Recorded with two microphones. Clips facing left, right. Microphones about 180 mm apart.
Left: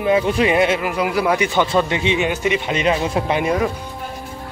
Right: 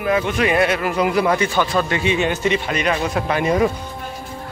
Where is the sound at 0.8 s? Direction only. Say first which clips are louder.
Right 1 dB; 5° left (ahead or behind).